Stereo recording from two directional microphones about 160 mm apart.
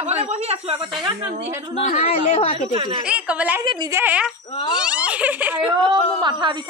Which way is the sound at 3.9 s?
10° right (ahead or behind).